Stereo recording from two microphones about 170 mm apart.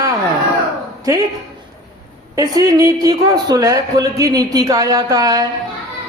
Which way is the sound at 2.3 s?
20° right (ahead or behind).